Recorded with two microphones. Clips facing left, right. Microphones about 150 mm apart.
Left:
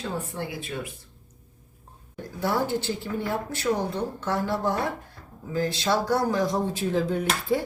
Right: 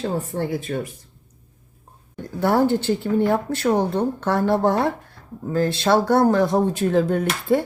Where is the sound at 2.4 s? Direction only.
60° right (ahead or behind).